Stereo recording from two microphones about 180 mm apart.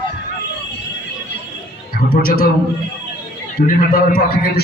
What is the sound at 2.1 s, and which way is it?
Speech, 55° left (ahead or behind).